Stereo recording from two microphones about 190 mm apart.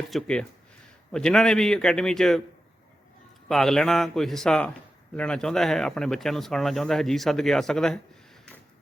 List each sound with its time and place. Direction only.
0.1 s speech: 5° left (ahead or behind)
3.5 s speech: centre (ahead or behind)